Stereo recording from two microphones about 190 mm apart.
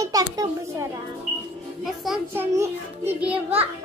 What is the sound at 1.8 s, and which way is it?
Speech, centre (ahead or behind).